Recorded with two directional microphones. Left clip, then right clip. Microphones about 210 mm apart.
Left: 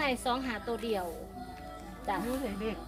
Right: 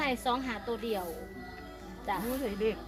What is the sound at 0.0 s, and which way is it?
A woman's voice, centre (ahead or behind).